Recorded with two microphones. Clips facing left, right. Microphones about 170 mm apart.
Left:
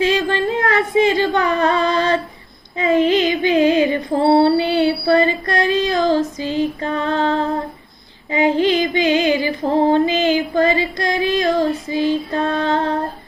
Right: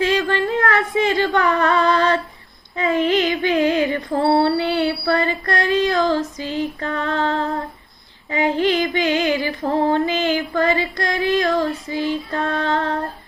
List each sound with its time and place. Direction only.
0.0 s a sound: 15° left (ahead or behind)
2.7 s female singing: 20° left (ahead or behind)
8.3 s music: 15° left (ahead or behind)